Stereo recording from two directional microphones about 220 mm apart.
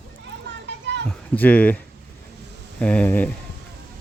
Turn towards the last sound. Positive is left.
turn(degrees=5)  # may be behind; listen again after turning